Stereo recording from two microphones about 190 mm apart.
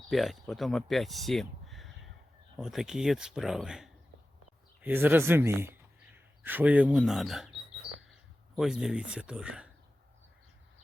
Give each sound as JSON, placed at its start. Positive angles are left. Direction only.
{"t": 0.1, "sound": "speech", "side_deg": 0}